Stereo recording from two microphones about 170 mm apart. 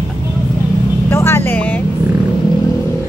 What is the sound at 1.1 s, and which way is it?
Speech, 15° left (ahead or behind).